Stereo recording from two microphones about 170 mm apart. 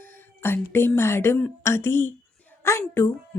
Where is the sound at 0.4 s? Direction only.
15° left (ahead or behind).